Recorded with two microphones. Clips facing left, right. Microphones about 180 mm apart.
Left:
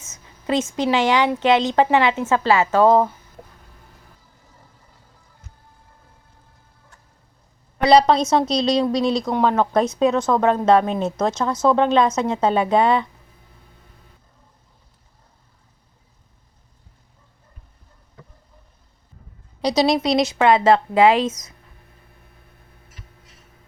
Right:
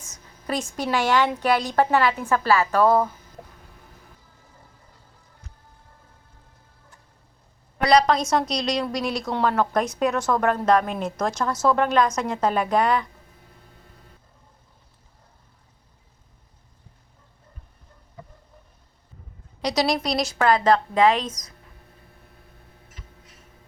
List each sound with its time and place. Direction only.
0.4 s a woman's voice: 20° left (ahead or behind)
7.8 s a woman's voice: 25° left (ahead or behind)
19.6 s a woman's voice: 25° left (ahead or behind)
19.9 s a woman's voice: centre (ahead or behind)
20.4 s a woman's voice: 25° left (ahead or behind)